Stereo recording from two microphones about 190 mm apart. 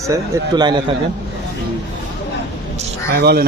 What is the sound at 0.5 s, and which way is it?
Speech, 20° right (ahead or behind).